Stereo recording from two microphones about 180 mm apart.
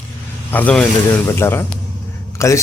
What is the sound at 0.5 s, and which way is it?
A man's voice, 5° left (ahead or behind).